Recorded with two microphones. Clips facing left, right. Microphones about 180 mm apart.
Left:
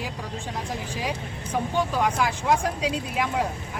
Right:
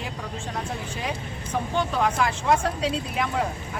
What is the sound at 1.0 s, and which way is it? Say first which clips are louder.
Speech: left 1 dB; 10° left (ahead or behind).